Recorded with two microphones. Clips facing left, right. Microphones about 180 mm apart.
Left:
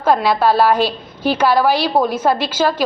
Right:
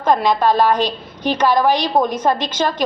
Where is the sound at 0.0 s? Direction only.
5° left (ahead or behind).